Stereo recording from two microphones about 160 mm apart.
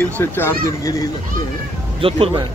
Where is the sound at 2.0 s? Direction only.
35° right (ahead or behind).